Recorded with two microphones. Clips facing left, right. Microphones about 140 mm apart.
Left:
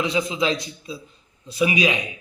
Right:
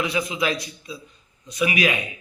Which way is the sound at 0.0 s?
25° left (ahead or behind).